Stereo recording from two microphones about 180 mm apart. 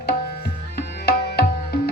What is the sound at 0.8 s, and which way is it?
Music, 60° left (ahead or behind).